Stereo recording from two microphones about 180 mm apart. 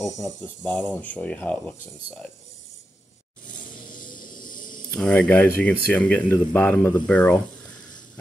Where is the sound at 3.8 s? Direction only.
50° left (ahead or behind).